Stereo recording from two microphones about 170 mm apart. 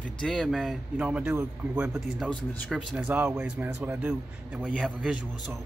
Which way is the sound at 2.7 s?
5° right (ahead or behind).